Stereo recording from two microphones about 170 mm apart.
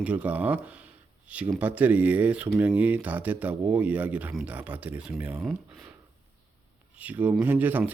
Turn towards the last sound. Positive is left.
turn(degrees=-10)  # may be behind; listen again after turning